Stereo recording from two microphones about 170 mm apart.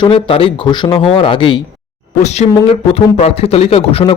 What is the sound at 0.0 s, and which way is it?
A man's voice, 35° left (ahead or behind).